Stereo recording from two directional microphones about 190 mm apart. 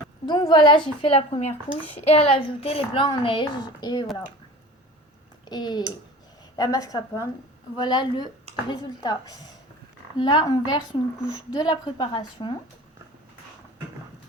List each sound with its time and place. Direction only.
0.3 s a woman's voice: 25° left (ahead or behind)
5.5 s a woman's voice: 20° left (ahead or behind)